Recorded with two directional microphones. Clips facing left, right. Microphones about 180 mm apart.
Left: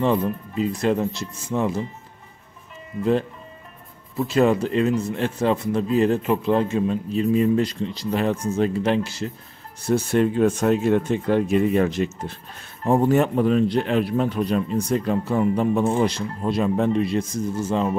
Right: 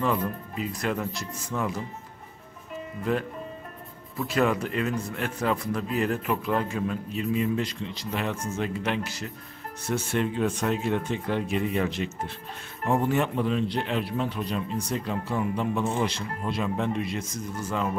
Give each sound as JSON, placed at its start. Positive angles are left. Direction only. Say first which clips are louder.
{"t": 0.0, "sound": "a man's voice", "louder": "left 6 dB", "side_deg": 25}
{"t": 4.2, "sound": "a man's voice", "louder": "left 6 dB", "side_deg": 25}
{"t": 9.8, "sound": "speech", "louder": "left 8 dB", "side_deg": 40}
{"t": 12.8, "sound": "speech", "louder": "left 6 dB", "side_deg": 35}